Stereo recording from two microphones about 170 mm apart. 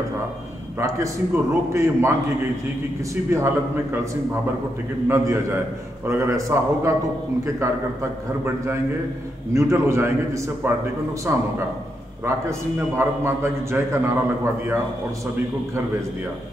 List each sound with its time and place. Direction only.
0.7 s a man's voice: 15° right (ahead or behind)
3.3 s a man's voice: 15° right (ahead or behind)
9.5 s a man's voice: 15° right (ahead or behind)